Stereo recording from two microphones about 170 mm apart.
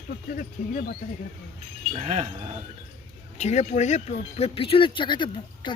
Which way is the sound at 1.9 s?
35° right (ahead or behind).